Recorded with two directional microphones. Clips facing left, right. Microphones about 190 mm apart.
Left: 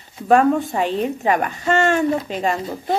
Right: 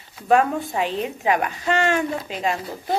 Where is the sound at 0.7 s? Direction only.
45° left (ahead or behind).